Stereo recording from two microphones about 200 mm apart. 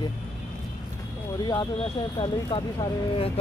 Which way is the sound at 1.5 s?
25° left (ahead or behind).